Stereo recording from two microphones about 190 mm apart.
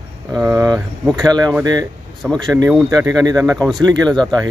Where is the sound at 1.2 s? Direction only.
20° right (ahead or behind).